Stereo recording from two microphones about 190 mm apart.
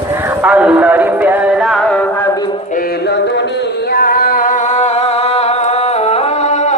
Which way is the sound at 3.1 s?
65° left (ahead or behind).